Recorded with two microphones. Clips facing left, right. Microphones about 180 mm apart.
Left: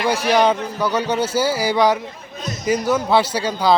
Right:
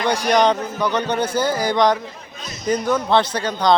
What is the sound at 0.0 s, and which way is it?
Speech, 5° left (ahead or behind).